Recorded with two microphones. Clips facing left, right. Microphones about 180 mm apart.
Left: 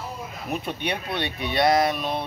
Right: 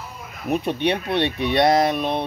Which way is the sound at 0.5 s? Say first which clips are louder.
Right 7 dB; 20° right (ahead or behind).